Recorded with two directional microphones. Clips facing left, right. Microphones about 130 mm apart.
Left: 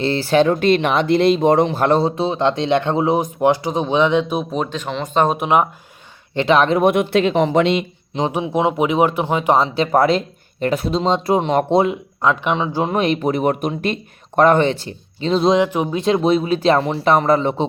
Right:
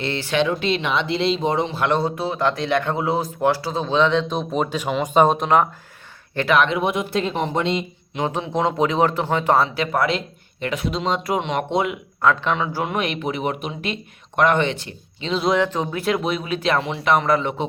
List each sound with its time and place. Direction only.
0.0 s speech: 35° left (ahead or behind)
2.0 s speech: 25° left (ahead or behind)
4.5 s speech: 5° right (ahead or behind)
5.3 s speech: 10° left (ahead or behind)
6.3 s speech: 25° left (ahead or behind)
6.7 s speech: 60° left (ahead or behind); by 7.9 s 85° left
8.3 s speech: 10° left (ahead or behind)
9.6 s speech: 35° left (ahead or behind)
12.2 s speech: 20° left (ahead or behind); by 15.4 s 35° left (ahead or behind)
15.4 s speech: 15° left (ahead or behind)